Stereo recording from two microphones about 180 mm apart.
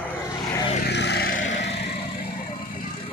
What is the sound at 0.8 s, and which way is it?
Vehicle, 70° left (ahead or behind).